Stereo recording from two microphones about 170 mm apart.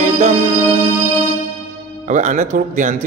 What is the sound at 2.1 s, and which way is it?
Speech, 45° right (ahead or behind).